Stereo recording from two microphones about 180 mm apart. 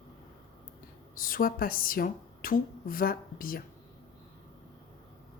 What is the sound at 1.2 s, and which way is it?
Speech, 55° left (ahead or behind).